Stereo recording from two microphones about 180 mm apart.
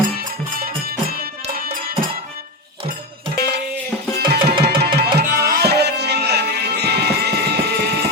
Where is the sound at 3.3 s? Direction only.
65° right (ahead or behind).